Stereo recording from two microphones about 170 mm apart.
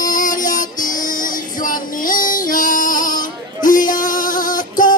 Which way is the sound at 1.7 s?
55° left (ahead or behind).